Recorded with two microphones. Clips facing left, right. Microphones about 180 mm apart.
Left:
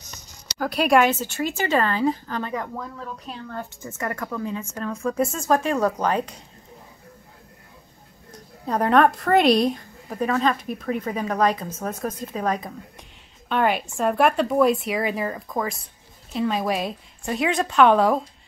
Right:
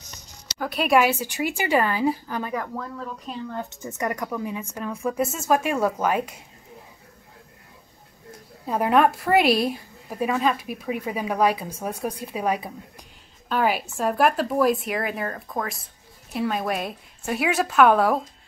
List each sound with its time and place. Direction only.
0.6 s a woman's voice: centre (ahead or behind)
2.7 s speech: centre (ahead or behind)
3.4 s a woman's voice: 20° right (ahead or behind)
8.6 s a woman's voice: 5° right (ahead or behind)